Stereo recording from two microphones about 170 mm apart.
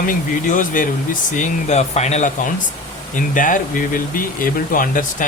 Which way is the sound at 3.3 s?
50° left (ahead or behind).